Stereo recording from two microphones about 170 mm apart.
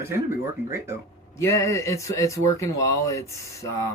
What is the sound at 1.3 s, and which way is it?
Speech, 15° left (ahead or behind).